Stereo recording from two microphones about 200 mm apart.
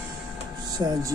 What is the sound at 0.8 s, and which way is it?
Speech, 20° right (ahead or behind).